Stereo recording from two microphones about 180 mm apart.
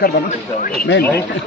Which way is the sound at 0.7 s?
75° left (ahead or behind).